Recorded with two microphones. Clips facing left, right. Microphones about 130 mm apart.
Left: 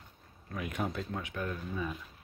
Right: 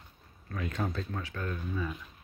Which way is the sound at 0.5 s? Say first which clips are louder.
Right 1 dB; 15° left (ahead or behind).